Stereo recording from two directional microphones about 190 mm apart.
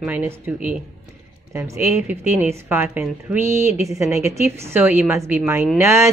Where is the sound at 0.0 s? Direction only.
10° right (ahead or behind).